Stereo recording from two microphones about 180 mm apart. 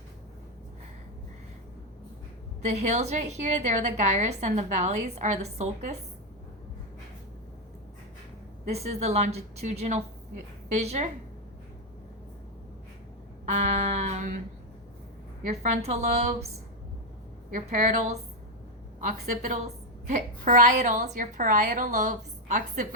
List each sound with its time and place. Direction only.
2.6 s a woman's voice: 40° right (ahead or behind)
8.7 s a woman's voice: 35° right (ahead or behind)
13.5 s a woman's voice: 40° right (ahead or behind)
15.6 s a woman's voice: 40° right (ahead or behind)
17.5 s a woman's voice: 40° right (ahead or behind)